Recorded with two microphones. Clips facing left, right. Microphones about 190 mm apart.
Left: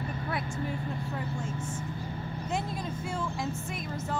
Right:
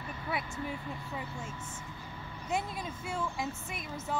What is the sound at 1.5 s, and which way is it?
Vehicle, 45° left (ahead or behind).